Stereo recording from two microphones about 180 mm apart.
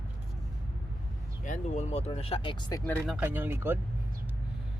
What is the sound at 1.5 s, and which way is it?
Speech, 45° left (ahead or behind).